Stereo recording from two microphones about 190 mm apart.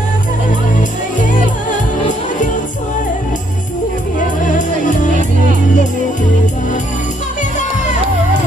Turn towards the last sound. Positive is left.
turn(degrees=40)  # may be behind; listen again after turning